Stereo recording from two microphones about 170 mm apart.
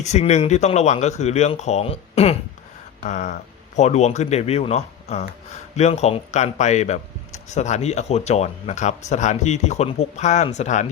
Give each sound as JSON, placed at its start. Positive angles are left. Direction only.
{"t": 0.0, "sound": "speech", "side_deg": 40}
{"t": 3.0, "sound": "a sound", "side_deg": 45}
{"t": 3.8, "sound": "speech", "side_deg": 40}